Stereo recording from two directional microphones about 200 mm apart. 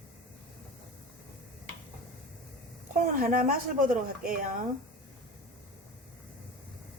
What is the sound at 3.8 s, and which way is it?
Speech, 45° right (ahead or behind).